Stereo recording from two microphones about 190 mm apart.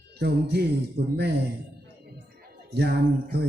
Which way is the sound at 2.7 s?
55° right (ahead or behind).